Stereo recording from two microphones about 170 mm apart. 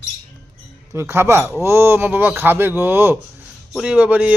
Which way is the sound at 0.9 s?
15° right (ahead or behind).